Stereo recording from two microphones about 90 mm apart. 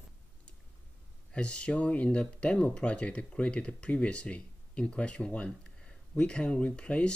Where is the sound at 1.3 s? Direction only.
10° left (ahead or behind).